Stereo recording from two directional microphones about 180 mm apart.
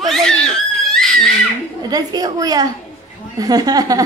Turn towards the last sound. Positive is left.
turn(degrees=-20)  # may be behind; listen again after turning